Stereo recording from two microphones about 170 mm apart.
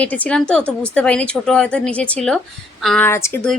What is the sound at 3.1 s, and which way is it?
Speech, 15° left (ahead or behind).